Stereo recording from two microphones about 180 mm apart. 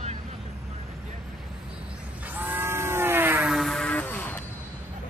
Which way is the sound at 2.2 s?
10° right (ahead or behind).